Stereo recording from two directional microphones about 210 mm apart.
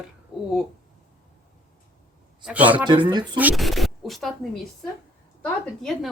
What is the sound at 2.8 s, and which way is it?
Speech, 20° right (ahead or behind).